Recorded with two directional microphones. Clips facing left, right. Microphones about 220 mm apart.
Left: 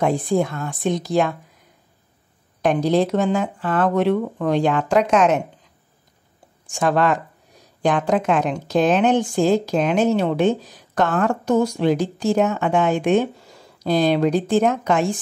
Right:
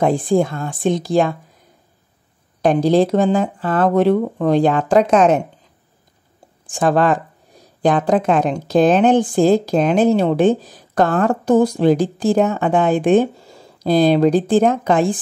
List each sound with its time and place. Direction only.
0.0 s speech: 30° right (ahead or behind)
2.6 s speech: 30° right (ahead or behind)
6.7 s speech: 35° right (ahead or behind)